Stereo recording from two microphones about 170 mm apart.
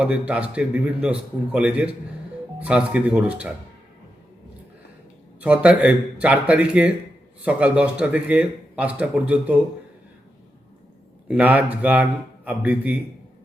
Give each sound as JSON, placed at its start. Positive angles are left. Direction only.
{"t": 0.0, "sound": "a man's voice", "side_deg": -5}
{"t": 5.4, "sound": "a man's voice", "side_deg": -5}
{"t": 11.3, "sound": "a man's voice", "side_deg": -10}